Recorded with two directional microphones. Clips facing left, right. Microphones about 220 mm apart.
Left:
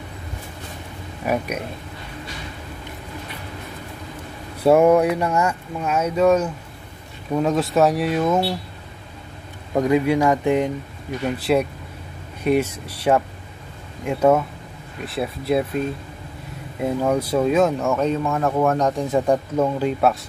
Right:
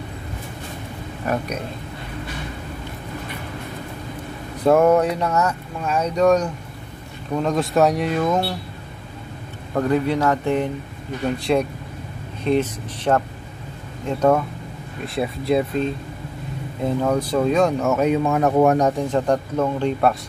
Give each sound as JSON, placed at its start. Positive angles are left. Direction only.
{"t": 1.2, "sound": "speech", "side_deg": 10}
{"t": 4.6, "sound": "speech", "side_deg": 10}
{"t": 9.8, "sound": "speech", "side_deg": 10}
{"t": 18.3, "sound": "speech", "side_deg": -20}
{"t": 19.0, "sound": "speech", "side_deg": 10}